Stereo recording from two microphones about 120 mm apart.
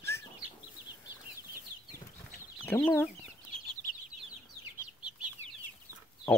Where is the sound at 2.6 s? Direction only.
20° left (ahead or behind).